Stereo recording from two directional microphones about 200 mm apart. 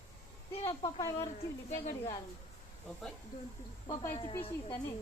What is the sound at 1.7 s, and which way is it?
Speech, 35° left (ahead or behind).